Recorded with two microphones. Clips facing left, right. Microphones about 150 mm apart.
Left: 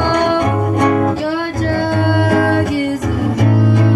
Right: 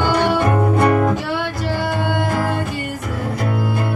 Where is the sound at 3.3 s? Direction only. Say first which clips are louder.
Left 6 dB; 90° left.